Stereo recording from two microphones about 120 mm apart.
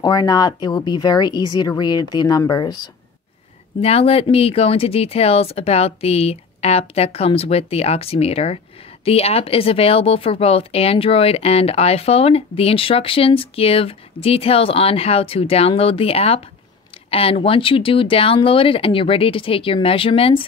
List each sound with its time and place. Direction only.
0.0 s speech: 35° left (ahead or behind)
3.8 s speech: 55° left (ahead or behind)